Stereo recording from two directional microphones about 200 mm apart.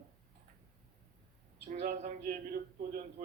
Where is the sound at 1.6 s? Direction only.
40° right (ahead or behind).